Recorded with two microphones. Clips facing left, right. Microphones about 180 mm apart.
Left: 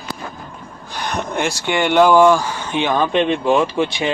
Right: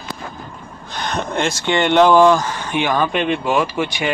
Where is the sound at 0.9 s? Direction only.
15° left (ahead or behind).